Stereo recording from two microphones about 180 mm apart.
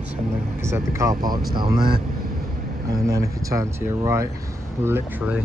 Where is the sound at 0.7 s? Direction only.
15° right (ahead or behind).